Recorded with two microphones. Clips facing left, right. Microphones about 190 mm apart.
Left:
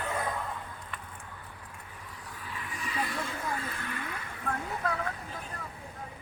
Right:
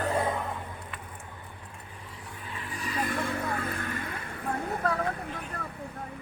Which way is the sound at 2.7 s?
40° right (ahead or behind).